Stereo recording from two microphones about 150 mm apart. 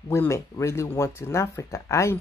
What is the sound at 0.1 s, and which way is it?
Speech, 20° left (ahead or behind).